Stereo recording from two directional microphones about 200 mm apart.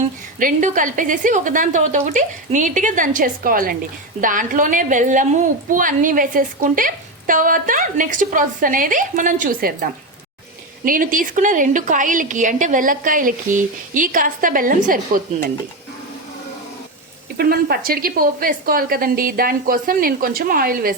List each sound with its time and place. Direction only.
0.0 s a woman's voice: 40° right (ahead or behind)
17.3 s a woman's voice: 50° right (ahead or behind)